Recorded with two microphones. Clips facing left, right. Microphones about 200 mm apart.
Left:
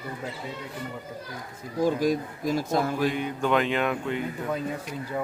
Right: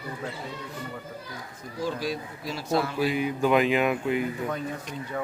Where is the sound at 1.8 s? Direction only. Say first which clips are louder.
Left 6 dB; 50° left (ahead or behind).